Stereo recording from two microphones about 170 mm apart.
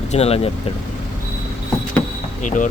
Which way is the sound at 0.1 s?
35° left (ahead or behind).